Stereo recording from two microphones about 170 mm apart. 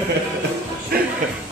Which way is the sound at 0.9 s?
65° right (ahead or behind).